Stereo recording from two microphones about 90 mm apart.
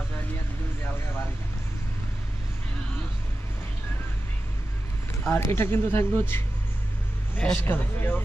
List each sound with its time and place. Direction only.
5.2 s speech: 25° left (ahead or behind)
7.3 s speech: 15° left (ahead or behind)